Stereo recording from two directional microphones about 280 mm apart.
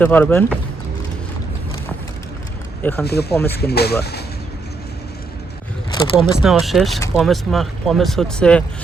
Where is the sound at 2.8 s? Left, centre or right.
Centre.